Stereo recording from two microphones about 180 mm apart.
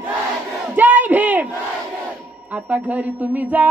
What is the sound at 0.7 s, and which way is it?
Battle cry, 10° right (ahead or behind).